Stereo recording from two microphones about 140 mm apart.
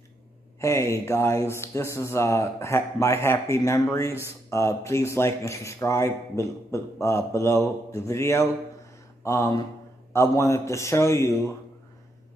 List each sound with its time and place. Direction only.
0.6 s speech: 20° left (ahead or behind)